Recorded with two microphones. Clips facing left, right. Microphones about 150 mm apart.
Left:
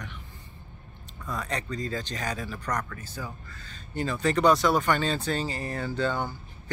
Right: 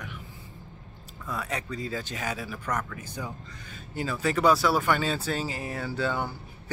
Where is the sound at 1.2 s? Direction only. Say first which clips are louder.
Left 1 dB; 5° right (ahead or behind).